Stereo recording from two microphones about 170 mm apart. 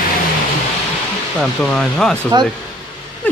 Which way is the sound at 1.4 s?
5° left (ahead or behind).